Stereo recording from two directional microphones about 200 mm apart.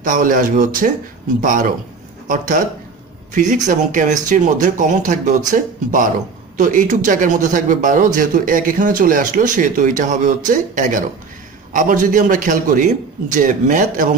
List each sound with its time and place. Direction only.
0.0 s speech: 40° right (ahead or behind)